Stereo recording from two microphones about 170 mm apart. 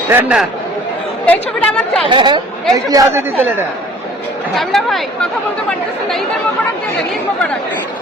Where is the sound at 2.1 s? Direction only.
30° right (ahead or behind); by 3.6 s 15° right (ahead or behind).